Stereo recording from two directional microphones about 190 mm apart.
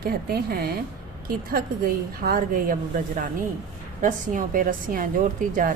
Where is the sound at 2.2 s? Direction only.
50° right (ahead or behind).